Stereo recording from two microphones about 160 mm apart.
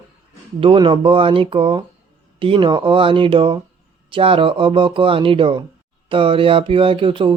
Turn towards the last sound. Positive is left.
turn(degrees=-35)  # may be behind; listen again after turning